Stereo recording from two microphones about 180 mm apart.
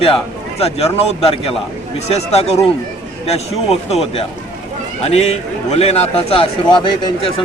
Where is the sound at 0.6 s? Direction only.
35° left (ahead or behind).